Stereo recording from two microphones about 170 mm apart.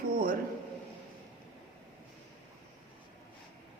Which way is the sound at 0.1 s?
55° right (ahead or behind).